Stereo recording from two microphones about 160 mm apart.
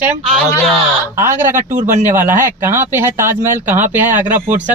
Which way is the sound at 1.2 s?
15° right (ahead or behind).